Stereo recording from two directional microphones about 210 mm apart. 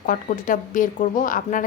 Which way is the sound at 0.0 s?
40° left (ahead or behind).